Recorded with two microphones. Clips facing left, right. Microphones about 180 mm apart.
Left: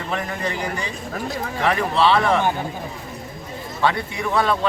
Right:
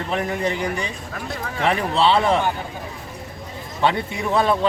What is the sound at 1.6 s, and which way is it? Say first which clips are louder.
Speech: even; 25° right (ahead or behind).